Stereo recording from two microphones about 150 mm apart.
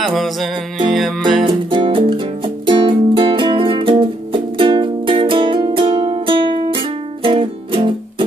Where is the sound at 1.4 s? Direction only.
35° right (ahead or behind).